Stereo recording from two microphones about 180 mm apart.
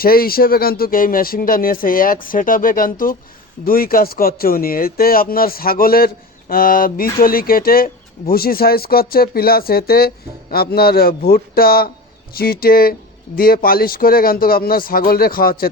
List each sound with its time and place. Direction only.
0.0 s speech: 55° left (ahead or behind)